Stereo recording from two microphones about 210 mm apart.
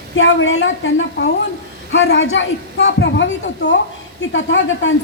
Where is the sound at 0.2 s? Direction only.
60° left (ahead or behind).